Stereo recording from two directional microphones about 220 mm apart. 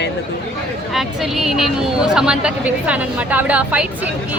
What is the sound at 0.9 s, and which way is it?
Speech, centre (ahead or behind).